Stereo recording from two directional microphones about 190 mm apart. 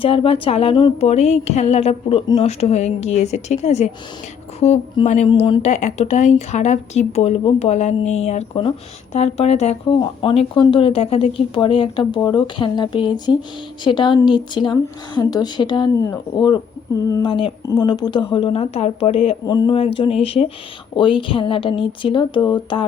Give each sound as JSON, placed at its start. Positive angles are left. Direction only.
{"t": 0.0, "sound": "a woman's voice", "side_deg": 30}
{"t": 5.0, "sound": "a woman's voice", "side_deg": 35}